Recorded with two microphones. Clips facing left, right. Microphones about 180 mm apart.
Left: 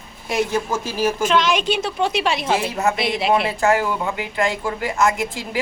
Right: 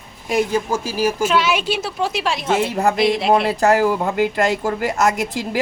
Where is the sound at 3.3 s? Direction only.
40° right (ahead or behind).